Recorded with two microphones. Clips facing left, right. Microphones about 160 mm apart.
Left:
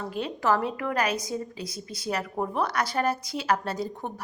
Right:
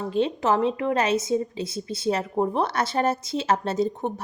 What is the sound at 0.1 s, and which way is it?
A woman's voice, 25° right (ahead or behind).